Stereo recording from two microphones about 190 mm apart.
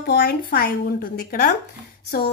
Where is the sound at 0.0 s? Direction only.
55° left (ahead or behind).